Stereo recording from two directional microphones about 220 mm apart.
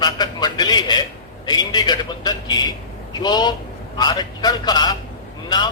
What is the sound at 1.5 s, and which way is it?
A man's voice, 20° left (ahead or behind).